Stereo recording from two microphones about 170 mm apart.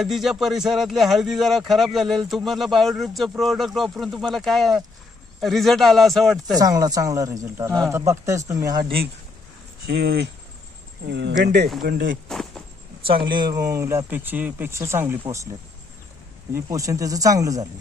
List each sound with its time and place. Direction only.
0.0 s a man's voice: centre (ahead or behind)
6.6 s speech: 20° right (ahead or behind)
8.8 s a man's voice: 65° right (ahead or behind)
11.1 s speech: 90° right; by 12.1 s 70° right (ahead or behind)
12.3 s a sound: centre (ahead or behind)
13.3 s speech: 25° right (ahead or behind)
16.6 s speech: 20° right (ahead or behind)